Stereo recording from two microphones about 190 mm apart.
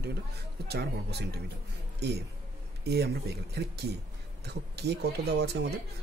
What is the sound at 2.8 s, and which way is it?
Speech, 60° right (ahead or behind).